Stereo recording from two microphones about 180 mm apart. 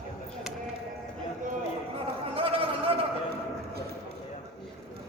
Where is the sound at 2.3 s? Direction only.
30° right (ahead or behind).